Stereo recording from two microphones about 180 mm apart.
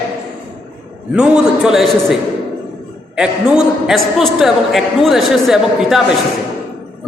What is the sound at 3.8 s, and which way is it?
A woman's voice, centre (ahead or behind).